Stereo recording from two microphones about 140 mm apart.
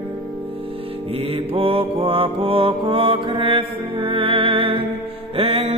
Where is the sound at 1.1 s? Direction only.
45° right (ahead or behind).